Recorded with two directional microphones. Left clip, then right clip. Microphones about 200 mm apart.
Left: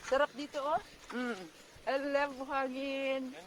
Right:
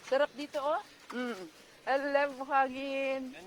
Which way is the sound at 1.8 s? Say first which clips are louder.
Right 3 dB; 30° left (ahead or behind).